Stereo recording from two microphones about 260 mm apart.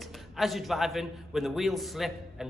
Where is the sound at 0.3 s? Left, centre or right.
Centre.